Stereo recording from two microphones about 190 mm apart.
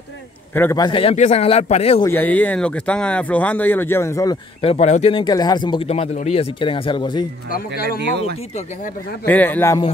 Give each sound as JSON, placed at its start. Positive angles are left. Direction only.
{"t": 0.6, "sound": "a man's voice", "side_deg": 15}
{"t": 2.0, "sound": "speech", "side_deg": 10}
{"t": 4.6, "sound": "speech", "side_deg": 35}
{"t": 9.2, "sound": "speech", "side_deg": 10}